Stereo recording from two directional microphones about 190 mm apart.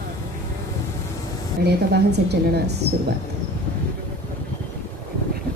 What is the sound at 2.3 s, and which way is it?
Speech, 60° right (ahead or behind).